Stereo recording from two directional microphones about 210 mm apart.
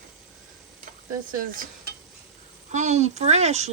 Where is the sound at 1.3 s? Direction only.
40° right (ahead or behind).